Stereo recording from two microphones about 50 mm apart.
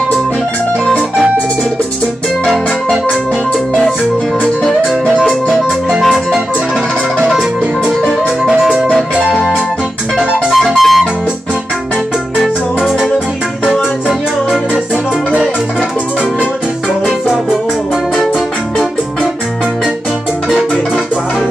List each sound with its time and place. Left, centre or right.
2.4 s keyboard: centre
7.2 s music: centre
10.1 s music: centre
13.7 s music: centre